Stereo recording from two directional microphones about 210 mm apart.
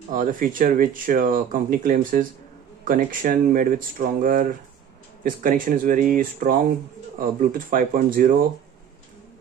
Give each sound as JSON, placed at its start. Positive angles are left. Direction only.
{"t": 0.1, "sound": "speech", "side_deg": -40}